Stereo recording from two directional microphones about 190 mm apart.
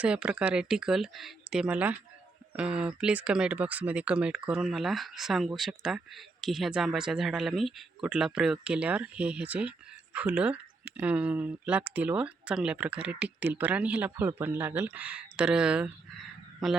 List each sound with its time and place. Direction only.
0.0 s speech: 5° right (ahead or behind)